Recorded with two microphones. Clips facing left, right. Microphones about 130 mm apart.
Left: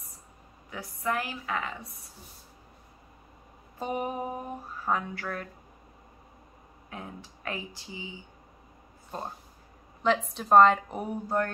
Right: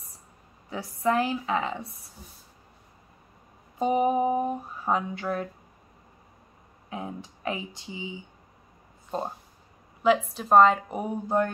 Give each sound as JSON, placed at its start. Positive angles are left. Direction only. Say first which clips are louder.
{"t": 0.7, "sound": "mantra", "louder": "right 6 dB", "side_deg": -30}
{"t": 3.8, "sound": "mantra", "louder": "right 9 dB", "side_deg": -20}
{"t": 6.9, "sound": "mantra", "louder": "right 6 dB", "side_deg": -20}
{"t": 10.0, "sound": "a woman's voice", "louder": "right 4 dB", "side_deg": -5}
{"t": 10.9, "sound": "speech", "louder": "right 3 dB", "side_deg": -15}